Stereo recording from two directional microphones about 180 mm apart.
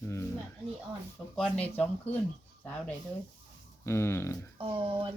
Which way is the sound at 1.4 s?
5° left (ahead or behind).